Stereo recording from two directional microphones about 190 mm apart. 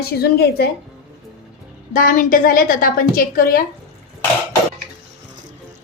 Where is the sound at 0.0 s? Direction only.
55° left (ahead or behind).